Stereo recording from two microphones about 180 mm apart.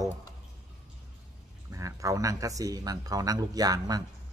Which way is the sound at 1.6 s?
15° right (ahead or behind).